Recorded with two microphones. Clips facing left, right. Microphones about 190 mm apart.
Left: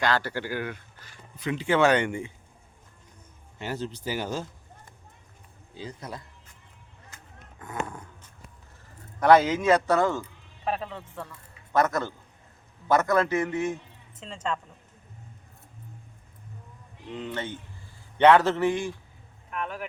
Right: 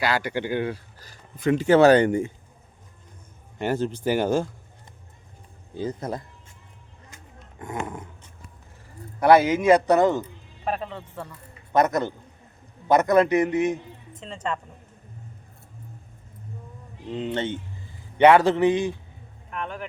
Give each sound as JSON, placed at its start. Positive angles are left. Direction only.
{"t": 0.0, "sound": "speech", "side_deg": -10}
{"t": 3.6, "sound": "speech", "side_deg": -55}
{"t": 5.7, "sound": "speech", "side_deg": -50}
{"t": 7.6, "sound": "a man's voice", "side_deg": -25}
{"t": 9.2, "sound": "a man's voice", "side_deg": -10}
{"t": 10.6, "sound": "speech", "side_deg": 0}
{"t": 11.3, "sound": "a man's voice", "side_deg": -20}
{"t": 14.2, "sound": "speech", "side_deg": -5}
{"t": 17.1, "sound": "a man's voice", "side_deg": -25}
{"t": 18.2, "sound": "a man's voice", "side_deg": -10}
{"t": 19.5, "sound": "speech", "side_deg": 5}